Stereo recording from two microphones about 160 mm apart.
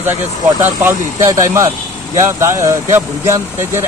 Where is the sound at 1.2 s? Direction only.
20° right (ahead or behind).